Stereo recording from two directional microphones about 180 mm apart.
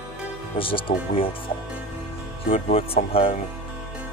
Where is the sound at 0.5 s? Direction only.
30° left (ahead or behind).